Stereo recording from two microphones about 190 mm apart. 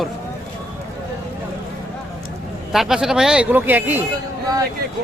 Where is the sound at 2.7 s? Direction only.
Centre (ahead or behind).